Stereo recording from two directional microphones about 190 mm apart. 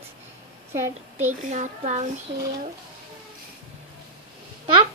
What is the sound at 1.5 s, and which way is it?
Speech, 40° right (ahead or behind).